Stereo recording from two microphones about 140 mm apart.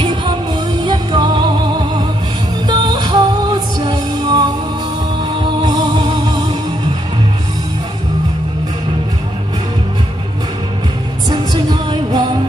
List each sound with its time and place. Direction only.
0.0 s music: 35° right (ahead or behind)
5.6 s music: 25° right (ahead or behind)
11.2 s music: 30° right (ahead or behind)